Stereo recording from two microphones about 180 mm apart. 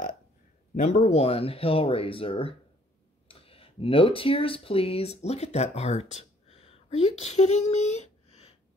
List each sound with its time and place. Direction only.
0.7 s speech: 40° left (ahead or behind)